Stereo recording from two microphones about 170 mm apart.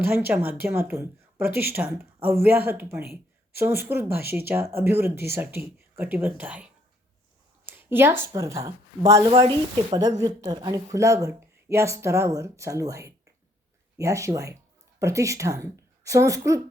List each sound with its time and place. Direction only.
0.3 s speech: 15° right (ahead or behind)
7.6 s a sound: 10° right (ahead or behind)
8.4 s a woman's voice: 20° right (ahead or behind)